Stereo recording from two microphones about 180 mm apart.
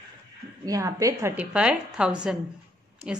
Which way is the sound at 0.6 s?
20° right (ahead or behind).